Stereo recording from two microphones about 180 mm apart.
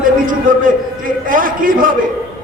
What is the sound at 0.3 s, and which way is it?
A man's voice, 50° right (ahead or behind).